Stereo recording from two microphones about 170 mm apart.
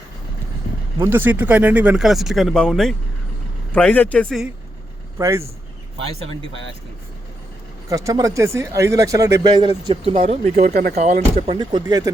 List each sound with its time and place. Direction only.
0.9 s speech: 15° right (ahead or behind); by 4.4 s 5° left (ahead or behind)
5.1 s speech: 15° right (ahead or behind)
7.9 s speech: 20° right (ahead or behind); by 10.7 s 40° right (ahead or behind)
10.7 s speech: 60° right (ahead or behind)
10.9 s speech: 45° right (ahead or behind)
11.5 s speech: 25° right (ahead or behind)